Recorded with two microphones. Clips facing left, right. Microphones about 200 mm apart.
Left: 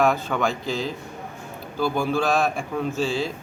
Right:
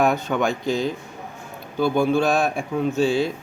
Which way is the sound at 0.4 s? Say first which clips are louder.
Right 3 dB; centre (ahead or behind).